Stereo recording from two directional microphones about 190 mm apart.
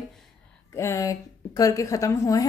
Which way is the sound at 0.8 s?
15° left (ahead or behind).